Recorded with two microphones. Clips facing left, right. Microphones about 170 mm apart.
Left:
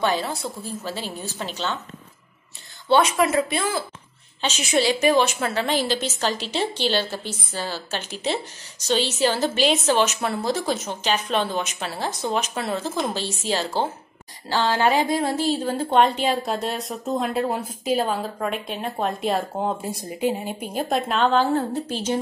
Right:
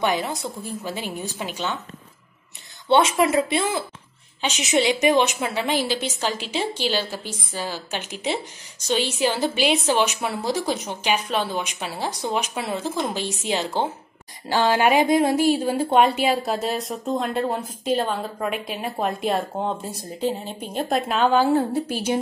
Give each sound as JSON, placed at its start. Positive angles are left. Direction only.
{"t": 0.0, "sound": "a woman's voice", "side_deg": -15}
{"t": 2.9, "sound": "a woman's voice", "side_deg": -25}
{"t": 21.0, "sound": "a woman's voice", "side_deg": -5}